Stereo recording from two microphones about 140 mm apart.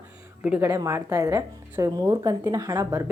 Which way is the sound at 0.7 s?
25° right (ahead or behind).